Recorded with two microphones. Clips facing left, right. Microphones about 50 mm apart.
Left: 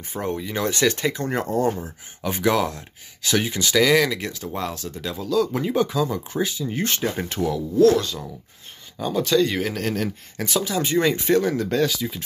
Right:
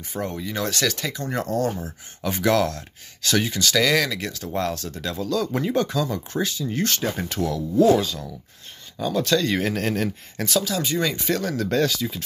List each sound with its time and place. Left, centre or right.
0.1 s speech: left
2.2 s speech: centre
8.9 s speech: centre
10.6 s speech: left
11.7 s speech: centre